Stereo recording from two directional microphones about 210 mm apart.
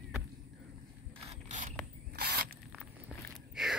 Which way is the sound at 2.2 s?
50° right (ahead or behind).